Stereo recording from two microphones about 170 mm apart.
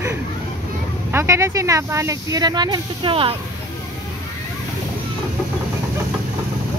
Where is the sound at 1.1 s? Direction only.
15° right (ahead or behind); by 3.3 s 30° right (ahead or behind).